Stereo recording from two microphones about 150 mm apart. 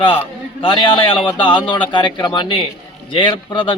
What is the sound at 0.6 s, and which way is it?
A man's voice, 35° left (ahead or behind).